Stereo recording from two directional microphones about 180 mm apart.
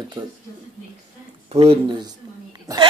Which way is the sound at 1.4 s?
30° right (ahead or behind).